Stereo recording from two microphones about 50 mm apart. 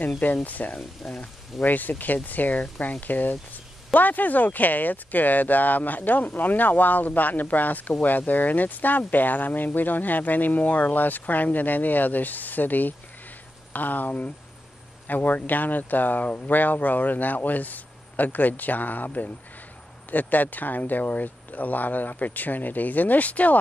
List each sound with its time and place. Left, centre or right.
0.2 s speech: left
0.7 s speech: centre
1.6 s speech: left